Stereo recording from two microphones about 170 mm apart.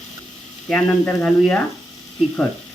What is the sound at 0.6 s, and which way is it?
Speech, 5° left (ahead or behind).